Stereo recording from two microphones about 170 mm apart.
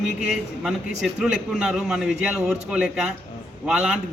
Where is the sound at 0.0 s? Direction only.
Centre (ahead or behind).